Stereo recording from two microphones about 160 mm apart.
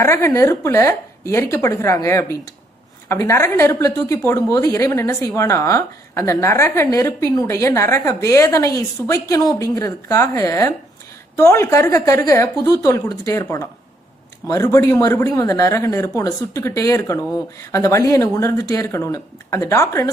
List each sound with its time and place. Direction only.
0.0 s speech: 20° left (ahead or behind)